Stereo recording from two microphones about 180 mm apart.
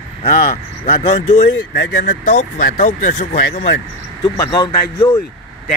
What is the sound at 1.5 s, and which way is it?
Speech, 85° left.